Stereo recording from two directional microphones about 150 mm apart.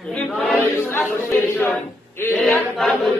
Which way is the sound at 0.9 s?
15° left (ahead or behind).